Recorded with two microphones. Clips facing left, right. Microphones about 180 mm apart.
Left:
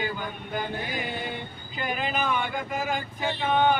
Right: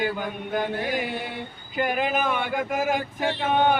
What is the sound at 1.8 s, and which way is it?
Speech, 55° right (ahead or behind).